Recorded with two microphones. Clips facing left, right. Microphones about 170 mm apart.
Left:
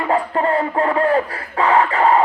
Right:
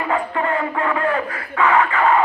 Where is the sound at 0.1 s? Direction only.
35° left (ahead or behind).